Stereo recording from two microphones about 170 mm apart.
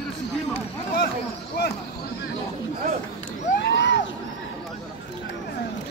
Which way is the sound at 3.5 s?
90° left.